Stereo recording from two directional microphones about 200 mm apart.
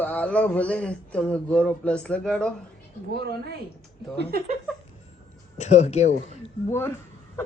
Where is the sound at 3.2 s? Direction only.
55° right (ahead or behind).